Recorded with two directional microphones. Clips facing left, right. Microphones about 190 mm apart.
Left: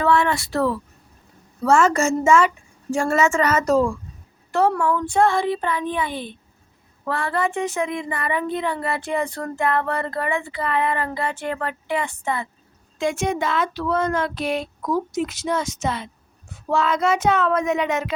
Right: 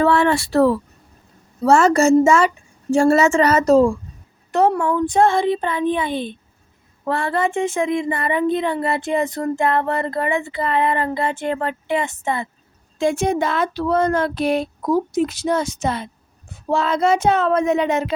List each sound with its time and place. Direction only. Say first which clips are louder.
0.0 s speech: right 3 dB; 35° right (ahead or behind)